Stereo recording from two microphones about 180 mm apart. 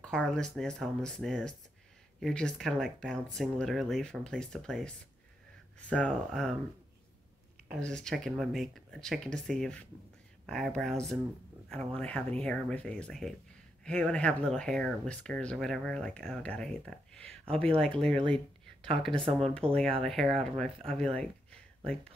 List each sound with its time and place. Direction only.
0.0 s speech: 5° left (ahead or behind)
7.7 s speech: 5° left (ahead or behind)
18.1 s speech: 30° right (ahead or behind)
19.3 s speech: 5° left (ahead or behind)